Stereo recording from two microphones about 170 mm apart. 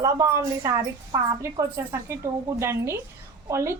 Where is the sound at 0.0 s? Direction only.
20° right (ahead or behind).